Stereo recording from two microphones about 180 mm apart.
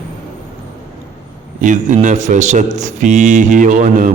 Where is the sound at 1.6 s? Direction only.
45° right (ahead or behind).